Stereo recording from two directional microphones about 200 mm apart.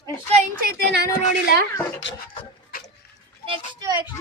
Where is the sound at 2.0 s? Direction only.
65° left (ahead or behind).